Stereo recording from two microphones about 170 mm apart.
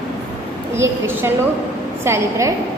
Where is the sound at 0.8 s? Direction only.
15° right (ahead or behind).